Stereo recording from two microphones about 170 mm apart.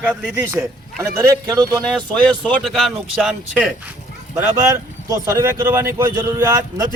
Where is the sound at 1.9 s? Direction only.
5° left (ahead or behind).